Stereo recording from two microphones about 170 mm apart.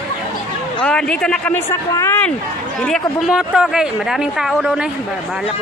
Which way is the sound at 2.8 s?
Centre (ahead or behind).